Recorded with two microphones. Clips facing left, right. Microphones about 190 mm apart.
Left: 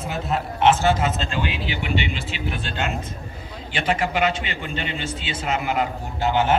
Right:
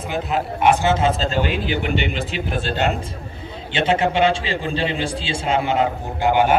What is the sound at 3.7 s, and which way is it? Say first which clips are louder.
A man's voice: right 5 dB; 25° right (ahead or behind).